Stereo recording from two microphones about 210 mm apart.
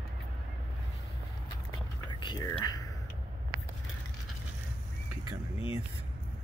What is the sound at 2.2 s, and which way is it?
Speech, 20° left (ahead or behind).